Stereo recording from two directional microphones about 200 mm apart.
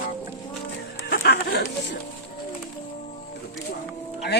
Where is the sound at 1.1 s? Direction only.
50° left (ahead or behind).